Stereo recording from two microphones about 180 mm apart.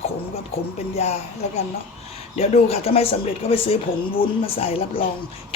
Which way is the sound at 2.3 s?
35° left (ahead or behind).